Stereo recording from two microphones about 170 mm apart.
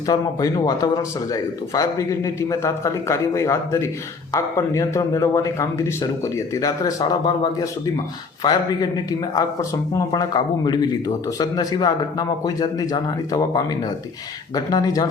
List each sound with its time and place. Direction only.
0.1 s speech: 25° left (ahead or behind)